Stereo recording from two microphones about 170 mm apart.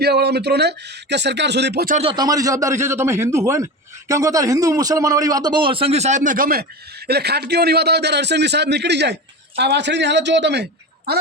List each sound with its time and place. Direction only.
0.0 s speech: 75° right (ahead or behind)
2.0 s a man's voice: 25° right (ahead or behind); by 6.7 s 60° right (ahead or behind)
7.1 s a man's voice: 70° right (ahead or behind)